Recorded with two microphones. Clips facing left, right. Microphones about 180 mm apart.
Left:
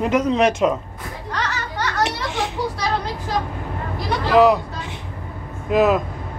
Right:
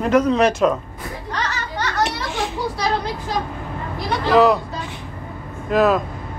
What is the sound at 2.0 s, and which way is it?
Children playing, 20° left (ahead or behind).